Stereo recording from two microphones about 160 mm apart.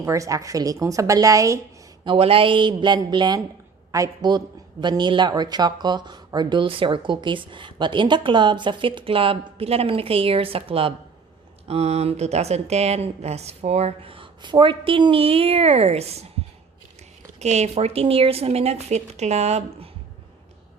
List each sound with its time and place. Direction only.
0.0 s a woman's voice: 20° right (ahead or behind)
2.0 s a woman's voice: 35° right (ahead or behind)
17.4 s a woman's voice: 45° right (ahead or behind)